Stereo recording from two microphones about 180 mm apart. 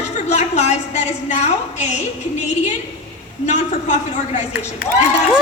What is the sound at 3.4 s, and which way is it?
Speech, 40° left (ahead or behind).